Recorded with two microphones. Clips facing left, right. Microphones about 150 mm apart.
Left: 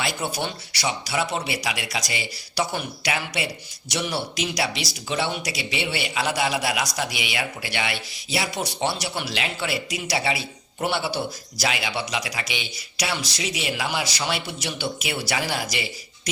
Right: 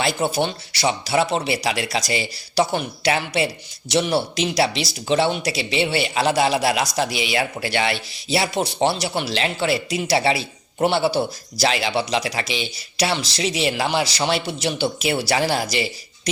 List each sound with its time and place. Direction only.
0.0 s speech: 25° right (ahead or behind)